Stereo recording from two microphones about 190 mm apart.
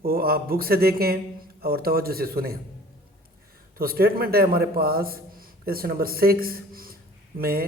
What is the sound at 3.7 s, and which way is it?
A man's voice, 50° right (ahead or behind).